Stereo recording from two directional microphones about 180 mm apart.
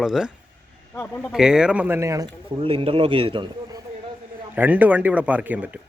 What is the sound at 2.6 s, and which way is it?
A man's voice, 30° right (ahead or behind).